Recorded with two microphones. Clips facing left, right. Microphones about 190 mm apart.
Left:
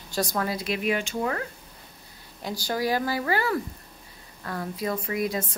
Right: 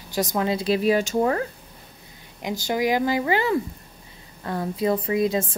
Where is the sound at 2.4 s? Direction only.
20° right (ahead or behind).